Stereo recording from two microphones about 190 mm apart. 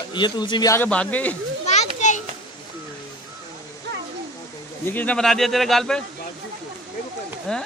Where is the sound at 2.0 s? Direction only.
40° left (ahead or behind).